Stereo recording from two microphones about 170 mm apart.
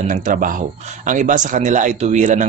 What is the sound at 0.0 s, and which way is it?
Speech, 50° right (ahead or behind).